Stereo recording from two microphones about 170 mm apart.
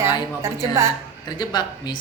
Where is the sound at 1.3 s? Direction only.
25° left (ahead or behind).